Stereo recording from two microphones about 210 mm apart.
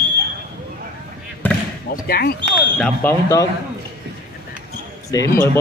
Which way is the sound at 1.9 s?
45° left (ahead or behind).